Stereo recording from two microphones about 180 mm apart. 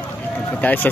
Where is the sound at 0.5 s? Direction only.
10° left (ahead or behind).